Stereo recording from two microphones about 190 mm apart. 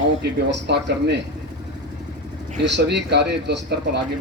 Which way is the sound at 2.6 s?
65° right (ahead or behind).